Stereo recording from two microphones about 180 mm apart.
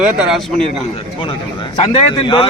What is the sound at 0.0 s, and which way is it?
Speech, 5° right (ahead or behind).